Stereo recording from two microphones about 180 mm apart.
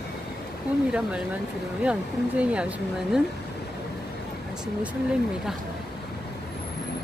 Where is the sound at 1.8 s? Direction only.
5° right (ahead or behind).